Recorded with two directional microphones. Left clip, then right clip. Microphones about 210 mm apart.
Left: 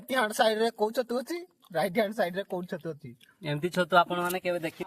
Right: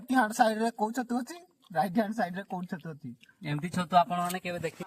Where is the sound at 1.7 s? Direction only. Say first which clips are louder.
Left 2 dB; 25° left (ahead or behind).